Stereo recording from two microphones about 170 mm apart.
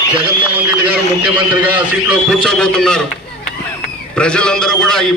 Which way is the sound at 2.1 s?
Centre (ahead or behind).